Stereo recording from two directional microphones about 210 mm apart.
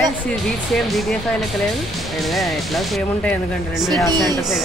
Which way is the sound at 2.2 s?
Centre (ahead or behind).